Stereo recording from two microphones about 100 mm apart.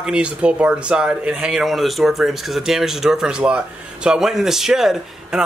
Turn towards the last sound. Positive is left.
turn(degrees=-5)  # may be behind; listen again after turning